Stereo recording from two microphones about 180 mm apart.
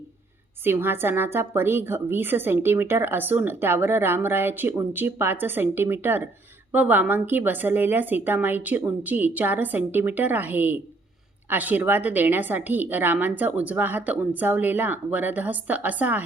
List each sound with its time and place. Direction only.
0.6 s a woman's voice: 10° right (ahead or behind)